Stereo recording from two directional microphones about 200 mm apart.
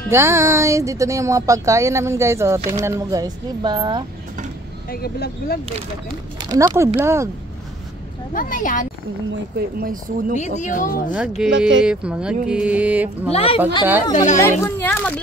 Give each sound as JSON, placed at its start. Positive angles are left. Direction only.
{"t": 0.1, "sound": "speech", "side_deg": -15}
{"t": 4.9, "sound": "speech", "side_deg": 50}
{"t": 6.5, "sound": "speech", "side_deg": -15}
{"t": 8.3, "sound": "speech", "side_deg": 40}
{"t": 9.3, "sound": "speech", "side_deg": -50}
{"t": 10.3, "sound": "speech", "side_deg": 35}
{"t": 11.1, "sound": "speech", "side_deg": -5}
{"t": 13.3, "sound": "speech", "side_deg": 30}
{"t": 14.4, "sound": "speech", "side_deg": 10}